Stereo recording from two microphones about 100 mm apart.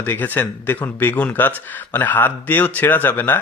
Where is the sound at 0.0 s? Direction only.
20° left (ahead or behind).